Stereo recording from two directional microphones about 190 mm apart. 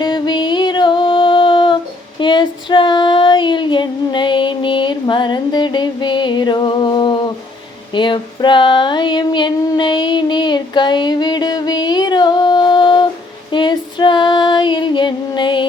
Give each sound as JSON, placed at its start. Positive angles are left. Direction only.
{"t": 0.0, "sound": "music", "side_deg": 25}
{"t": 7.9, "sound": "a sound", "side_deg": 25}
{"t": 13.5, "sound": "female singing", "side_deg": 25}